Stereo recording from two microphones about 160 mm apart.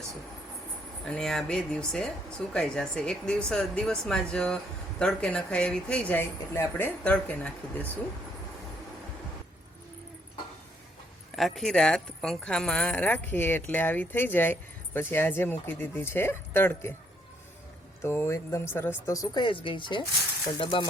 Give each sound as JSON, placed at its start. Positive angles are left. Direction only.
{"t": 1.0, "sound": "speech", "side_deg": 5}
{"t": 11.3, "sound": "speech", "side_deg": 0}
{"t": 18.0, "sound": "speech", "side_deg": 15}